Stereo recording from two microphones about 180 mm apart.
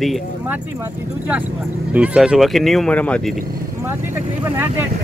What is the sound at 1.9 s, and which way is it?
Speech, 5° right (ahead or behind).